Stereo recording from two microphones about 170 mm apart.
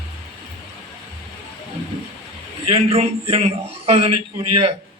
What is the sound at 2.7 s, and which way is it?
A man's voice, 35° right (ahead or behind).